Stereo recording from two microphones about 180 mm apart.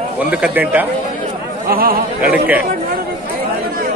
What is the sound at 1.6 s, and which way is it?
Speech, 55° right (ahead or behind).